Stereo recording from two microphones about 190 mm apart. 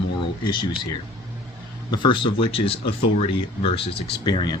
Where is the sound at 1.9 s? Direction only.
25° left (ahead or behind).